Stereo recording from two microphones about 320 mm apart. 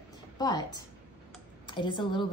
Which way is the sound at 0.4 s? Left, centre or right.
Centre.